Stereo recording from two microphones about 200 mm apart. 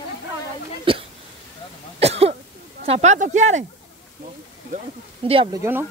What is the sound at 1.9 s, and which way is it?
Cough, 30° right (ahead or behind).